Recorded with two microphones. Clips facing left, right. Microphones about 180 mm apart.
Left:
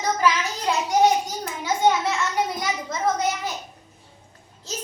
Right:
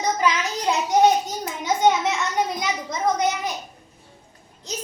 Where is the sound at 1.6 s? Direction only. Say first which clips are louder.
Right 1 dB; 20° right (ahead or behind).